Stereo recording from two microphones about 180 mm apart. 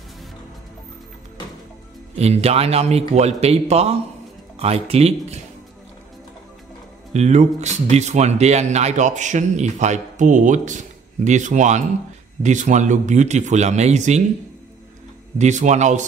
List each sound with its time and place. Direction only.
2.1 s a man's voice: 35° right (ahead or behind)
7.1 s a man's voice: 40° right (ahead or behind)
15.3 s a man's voice: 40° right (ahead or behind)